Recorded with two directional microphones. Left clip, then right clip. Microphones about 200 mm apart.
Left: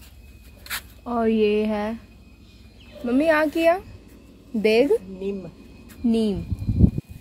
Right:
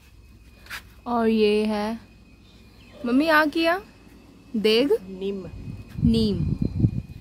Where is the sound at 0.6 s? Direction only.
60° left (ahead or behind).